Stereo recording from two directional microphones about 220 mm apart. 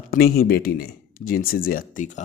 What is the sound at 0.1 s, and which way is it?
Speech, 45° left (ahead or behind).